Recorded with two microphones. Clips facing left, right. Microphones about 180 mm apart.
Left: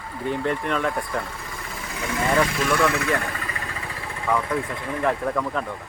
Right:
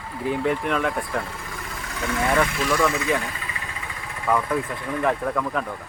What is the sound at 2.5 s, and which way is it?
Speech, 45° left (ahead or behind).